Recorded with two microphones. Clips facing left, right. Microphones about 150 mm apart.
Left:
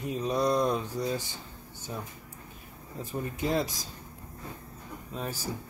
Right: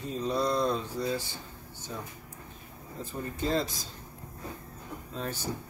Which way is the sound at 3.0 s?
15° left (ahead or behind).